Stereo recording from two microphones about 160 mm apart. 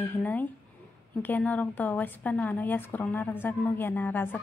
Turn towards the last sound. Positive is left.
turn(degrees=10)  # may be behind; listen again after turning